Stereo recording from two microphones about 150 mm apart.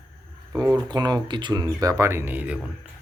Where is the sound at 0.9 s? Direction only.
30° right (ahead or behind); by 2.6 s 10° right (ahead or behind).